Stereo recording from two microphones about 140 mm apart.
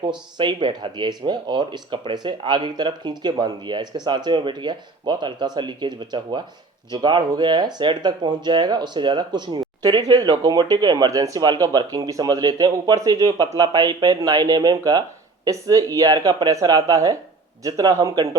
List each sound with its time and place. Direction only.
0.3 s speech: 30° right (ahead or behind)